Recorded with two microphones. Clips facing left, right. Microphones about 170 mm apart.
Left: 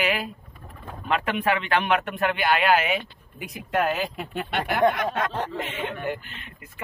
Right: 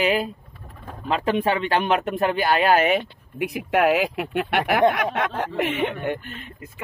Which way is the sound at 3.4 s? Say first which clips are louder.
Right 5 dB; 75° right (ahead or behind).